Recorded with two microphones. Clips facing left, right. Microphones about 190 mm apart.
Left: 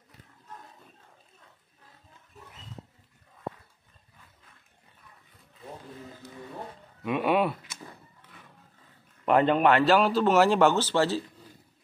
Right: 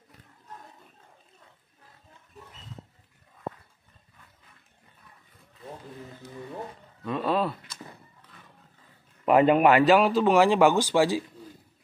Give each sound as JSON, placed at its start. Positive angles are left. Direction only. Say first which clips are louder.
{"t": 7.0, "sound": "speech", "louder": "left 2 dB", "side_deg": 15}
{"t": 9.2, "sound": "a man's voice", "louder": "right 3 dB", "side_deg": -5}
{"t": 10.6, "sound": "speech", "louder": "right 2 dB", "side_deg": -10}